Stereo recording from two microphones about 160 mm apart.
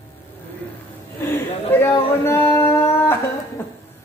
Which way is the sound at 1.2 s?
15° left (ahead or behind).